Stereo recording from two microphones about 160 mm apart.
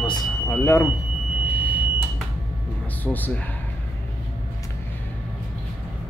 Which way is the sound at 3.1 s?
10° left (ahead or behind).